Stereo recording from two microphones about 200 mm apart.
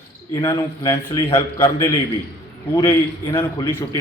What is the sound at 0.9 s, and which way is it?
A man's voice, 15° left (ahead or behind).